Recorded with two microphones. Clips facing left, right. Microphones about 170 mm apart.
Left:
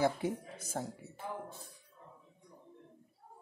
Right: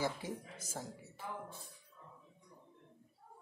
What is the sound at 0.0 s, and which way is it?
Speech, 60° left (ahead or behind).